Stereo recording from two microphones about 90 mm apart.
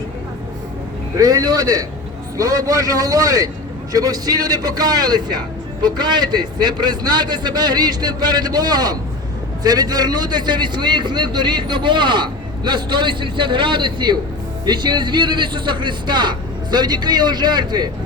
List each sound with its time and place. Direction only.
1.1 s a man's voice: 45° right (ahead or behind)